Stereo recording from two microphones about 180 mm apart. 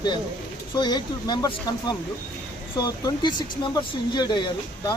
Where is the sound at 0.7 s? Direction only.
25° left (ahead or behind).